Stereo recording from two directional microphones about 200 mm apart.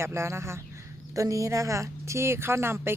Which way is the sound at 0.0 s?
15° right (ahead or behind).